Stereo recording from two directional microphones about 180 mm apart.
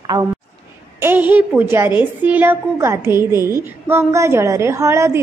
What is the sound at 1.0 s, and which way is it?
A woman's voice, 10° right (ahead or behind).